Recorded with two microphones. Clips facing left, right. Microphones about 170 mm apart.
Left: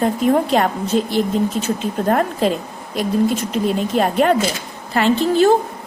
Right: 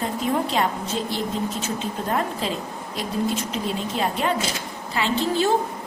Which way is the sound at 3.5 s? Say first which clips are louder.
Left 8 dB; 55° left (ahead or behind).